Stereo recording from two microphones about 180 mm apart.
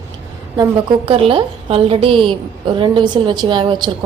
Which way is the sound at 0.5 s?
25° right (ahead or behind).